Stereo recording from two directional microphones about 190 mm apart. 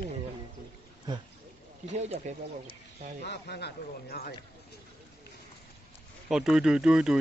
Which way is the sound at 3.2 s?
60° left (ahead or behind).